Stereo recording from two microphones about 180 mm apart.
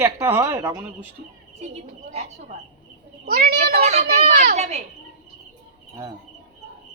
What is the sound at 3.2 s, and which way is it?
Speech, 60° right (ahead or behind).